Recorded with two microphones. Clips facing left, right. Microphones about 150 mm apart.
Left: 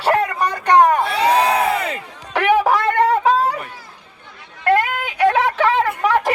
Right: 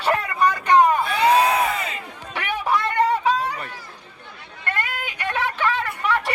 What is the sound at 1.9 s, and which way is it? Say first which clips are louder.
Chatter: left 7 dB; 85° left.